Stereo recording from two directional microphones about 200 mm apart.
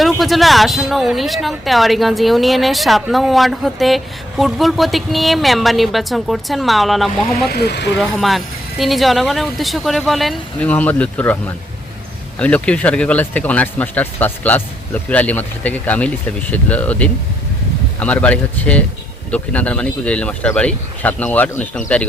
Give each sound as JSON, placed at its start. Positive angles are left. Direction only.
{"t": 0.0, "sound": "speech", "side_deg": 0}
{"t": 7.4, "sound": "speech", "side_deg": 55}
{"t": 7.9, "sound": "speech", "side_deg": 0}